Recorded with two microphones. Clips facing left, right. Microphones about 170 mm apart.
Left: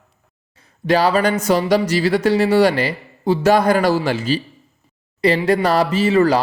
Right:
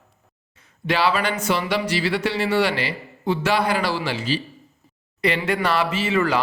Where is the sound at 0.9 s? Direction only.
40° left (ahead or behind).